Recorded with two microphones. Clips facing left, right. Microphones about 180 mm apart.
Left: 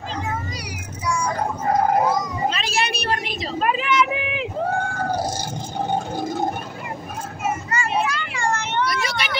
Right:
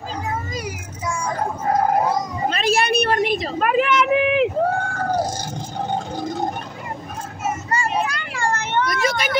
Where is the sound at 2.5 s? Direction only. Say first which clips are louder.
Right 6 dB; 55° right (ahead or behind).